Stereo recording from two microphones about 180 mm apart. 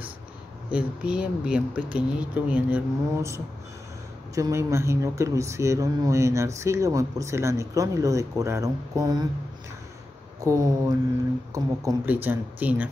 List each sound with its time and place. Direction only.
0.7 s speech: 5° right (ahead or behind)
10.4 s speech: 20° right (ahead or behind)